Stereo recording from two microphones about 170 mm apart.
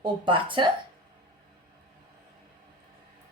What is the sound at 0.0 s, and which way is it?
Dishes, 30° right (ahead or behind).